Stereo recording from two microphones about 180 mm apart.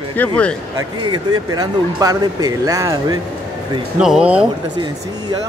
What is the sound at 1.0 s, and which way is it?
Speech, 20° right (ahead or behind).